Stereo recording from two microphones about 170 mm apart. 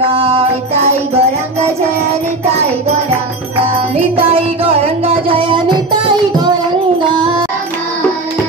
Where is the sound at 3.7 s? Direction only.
35° right (ahead or behind).